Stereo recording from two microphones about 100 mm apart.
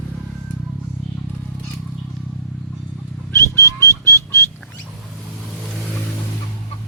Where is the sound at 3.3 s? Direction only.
30° left (ahead or behind).